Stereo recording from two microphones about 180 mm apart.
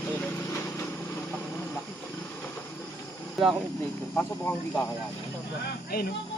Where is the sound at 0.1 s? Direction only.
10° left (ahead or behind).